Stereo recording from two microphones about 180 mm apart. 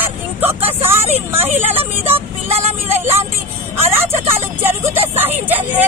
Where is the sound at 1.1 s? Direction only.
10° right (ahead or behind).